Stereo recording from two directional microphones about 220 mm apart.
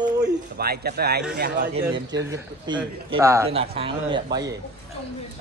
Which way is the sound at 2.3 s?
15° right (ahead or behind).